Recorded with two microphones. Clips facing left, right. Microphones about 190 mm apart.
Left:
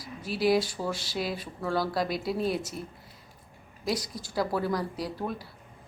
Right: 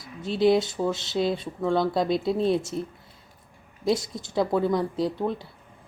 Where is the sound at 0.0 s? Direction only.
25° right (ahead or behind).